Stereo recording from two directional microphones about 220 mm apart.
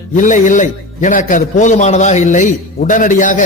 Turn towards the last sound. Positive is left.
turn(degrees=35)  # may be behind; listen again after turning